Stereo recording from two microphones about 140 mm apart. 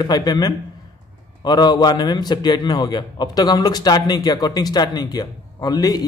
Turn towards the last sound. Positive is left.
turn(degrees=25)  # may be behind; listen again after turning